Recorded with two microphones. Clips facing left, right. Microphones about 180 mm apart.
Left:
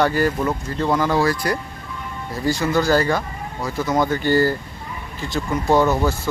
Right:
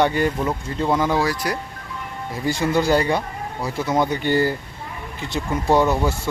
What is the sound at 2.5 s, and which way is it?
Speech, 25° right (ahead or behind).